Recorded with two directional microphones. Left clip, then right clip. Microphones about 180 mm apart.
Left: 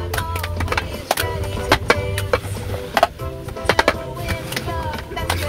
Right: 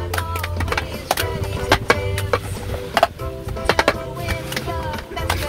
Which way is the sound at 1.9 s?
20° right (ahead or behind).